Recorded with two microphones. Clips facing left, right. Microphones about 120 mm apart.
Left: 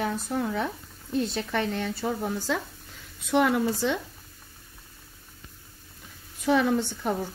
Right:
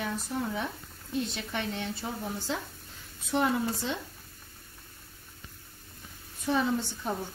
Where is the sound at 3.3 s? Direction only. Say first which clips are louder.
Left 5 dB; 90° left.